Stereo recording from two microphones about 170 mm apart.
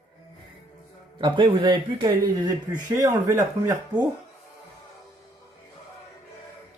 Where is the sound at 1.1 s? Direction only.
30° right (ahead or behind).